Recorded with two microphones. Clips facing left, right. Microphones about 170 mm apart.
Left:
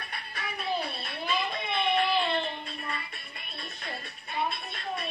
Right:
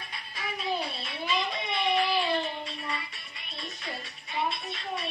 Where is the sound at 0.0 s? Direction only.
60° left (ahead or behind).